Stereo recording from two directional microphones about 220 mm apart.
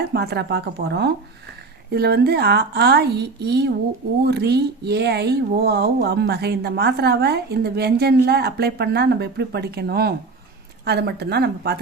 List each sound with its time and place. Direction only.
0.0 s speech: 45° right (ahead or behind)